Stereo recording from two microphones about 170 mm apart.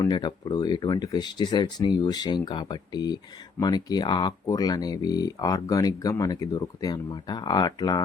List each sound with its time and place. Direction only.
0.0 s speech: 25° left (ahead or behind)